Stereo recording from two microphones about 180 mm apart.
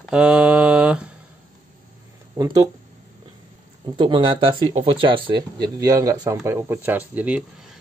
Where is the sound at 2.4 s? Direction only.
20° right (ahead or behind).